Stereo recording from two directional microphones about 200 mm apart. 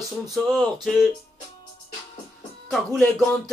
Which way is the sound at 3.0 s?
5° left (ahead or behind).